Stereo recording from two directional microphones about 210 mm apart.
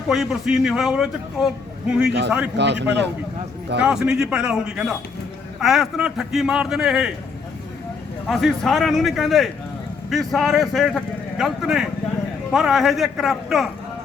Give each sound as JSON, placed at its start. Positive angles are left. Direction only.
{"t": 0.1, "sound": "speech", "side_deg": 0}
{"t": 2.0, "sound": "speech", "side_deg": -55}
{"t": 3.8, "sound": "speech", "side_deg": -5}
{"t": 8.3, "sound": "speech", "side_deg": 0}